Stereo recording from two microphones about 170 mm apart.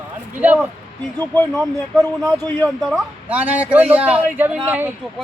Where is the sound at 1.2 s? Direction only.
10° left (ahead or behind); by 4.9 s 10° right (ahead or behind).